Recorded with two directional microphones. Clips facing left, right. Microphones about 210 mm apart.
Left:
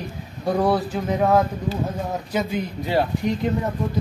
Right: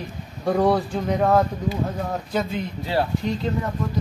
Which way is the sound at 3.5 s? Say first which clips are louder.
Left 1 dB; 20° left (ahead or behind).